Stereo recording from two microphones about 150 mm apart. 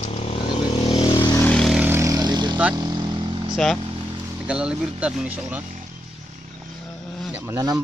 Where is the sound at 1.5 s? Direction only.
5° left (ahead or behind).